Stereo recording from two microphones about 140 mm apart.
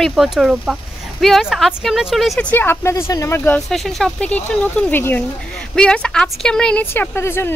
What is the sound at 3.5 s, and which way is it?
Speech, centre (ahead or behind).